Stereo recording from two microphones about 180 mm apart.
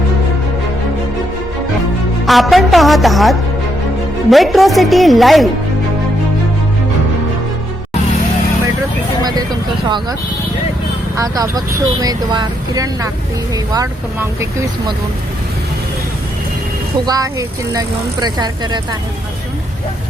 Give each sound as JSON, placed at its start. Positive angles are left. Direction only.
{"t": 2.2, "sound": "a woman's voice", "side_deg": 0}
{"t": 11.2, "sound": "speech", "side_deg": -20}
{"t": 17.1, "sound": "speech", "side_deg": -20}